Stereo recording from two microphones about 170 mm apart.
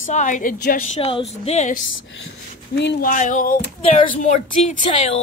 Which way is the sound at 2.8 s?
90° left.